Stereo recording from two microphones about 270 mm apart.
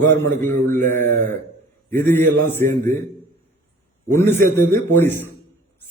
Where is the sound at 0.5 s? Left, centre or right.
Right.